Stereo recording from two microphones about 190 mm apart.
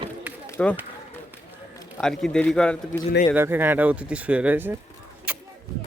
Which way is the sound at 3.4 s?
10° right (ahead or behind).